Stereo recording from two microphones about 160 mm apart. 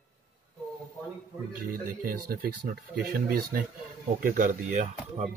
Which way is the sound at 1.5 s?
65° right (ahead or behind).